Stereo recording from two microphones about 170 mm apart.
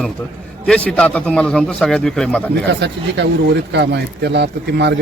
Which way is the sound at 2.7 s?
90° right.